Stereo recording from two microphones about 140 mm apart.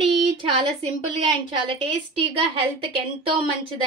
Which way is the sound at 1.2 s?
40° right (ahead or behind).